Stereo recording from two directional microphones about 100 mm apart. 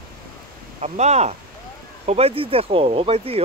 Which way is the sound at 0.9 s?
90° right.